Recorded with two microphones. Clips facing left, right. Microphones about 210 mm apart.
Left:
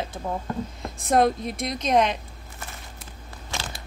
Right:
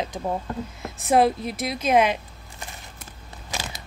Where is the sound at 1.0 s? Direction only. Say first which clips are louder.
Right 1 dB; 5° right (ahead or behind).